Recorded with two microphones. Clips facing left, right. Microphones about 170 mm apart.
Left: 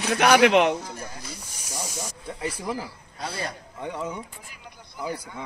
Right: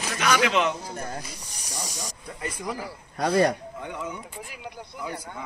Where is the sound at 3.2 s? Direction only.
65° right (ahead or behind).